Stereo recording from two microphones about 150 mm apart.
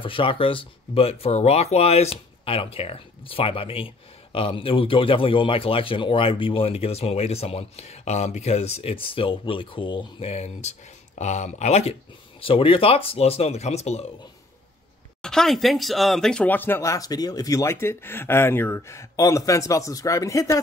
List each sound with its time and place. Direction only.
0.0 s speech: 35° left (ahead or behind)
15.2 s speech: 5° left (ahead or behind); by 20.5 s 20° left (ahead or behind)